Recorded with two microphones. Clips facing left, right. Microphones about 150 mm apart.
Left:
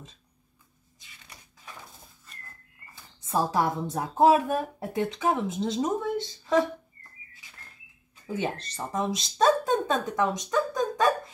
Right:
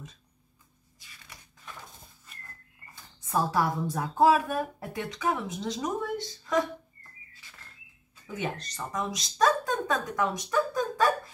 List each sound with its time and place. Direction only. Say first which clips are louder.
3.3 s speech: left 1 dB; 25° left (ahead or behind)
8.3 s a woman's voice: left 3 dB; 30° left (ahead or behind)